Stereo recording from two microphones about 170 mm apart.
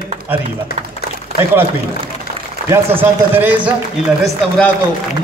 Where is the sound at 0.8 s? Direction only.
45° right (ahead or behind).